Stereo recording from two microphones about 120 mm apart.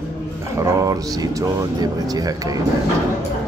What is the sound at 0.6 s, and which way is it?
Speech, 30° right (ahead or behind).